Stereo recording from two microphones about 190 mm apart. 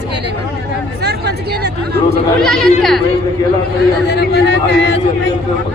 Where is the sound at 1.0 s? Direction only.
60° right (ahead or behind).